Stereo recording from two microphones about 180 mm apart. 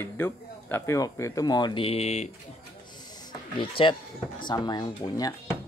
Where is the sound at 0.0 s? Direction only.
15° left (ahead or behind); by 2.2 s 35° left (ahead or behind).